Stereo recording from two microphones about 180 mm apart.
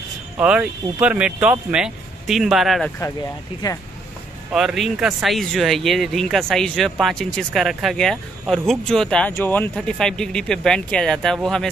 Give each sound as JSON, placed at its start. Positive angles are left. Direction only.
{"t": 0.4, "sound": "speech", "side_deg": -5}
{"t": 3.6, "sound": "speech", "side_deg": 20}
{"t": 4.5, "sound": "speech", "side_deg": 0}